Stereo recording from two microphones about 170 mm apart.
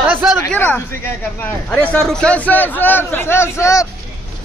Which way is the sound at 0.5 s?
10° left (ahead or behind).